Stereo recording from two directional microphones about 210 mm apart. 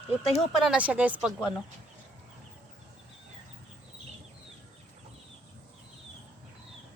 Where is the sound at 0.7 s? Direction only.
5° right (ahead or behind).